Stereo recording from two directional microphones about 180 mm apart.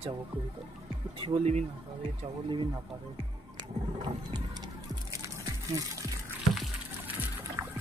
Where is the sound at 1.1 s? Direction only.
30° right (ahead or behind).